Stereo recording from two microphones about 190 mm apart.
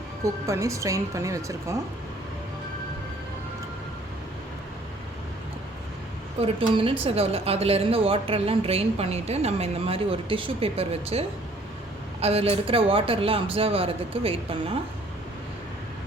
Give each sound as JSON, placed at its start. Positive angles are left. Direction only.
{"t": 0.4, "sound": "speech", "side_deg": -15}
{"t": 6.4, "sound": "a woman's voice", "side_deg": -30}